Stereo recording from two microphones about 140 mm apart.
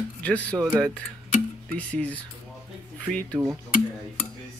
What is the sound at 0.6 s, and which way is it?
Speech, 5° right (ahead or behind).